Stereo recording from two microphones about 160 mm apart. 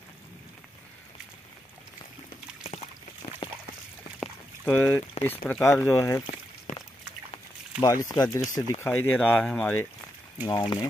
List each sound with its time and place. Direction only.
3.2 s a sound: 35° left (ahead or behind)
4.2 s a sound: 10° left (ahead or behind)
5.2 s speech: 10° left (ahead or behind)
7.8 s speech: 20° left (ahead or behind)
8.8 s speech: 10° left (ahead or behind)
10.4 s speech: 25° left (ahead or behind)